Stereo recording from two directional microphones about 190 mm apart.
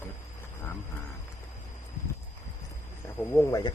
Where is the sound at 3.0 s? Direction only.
10° left (ahead or behind).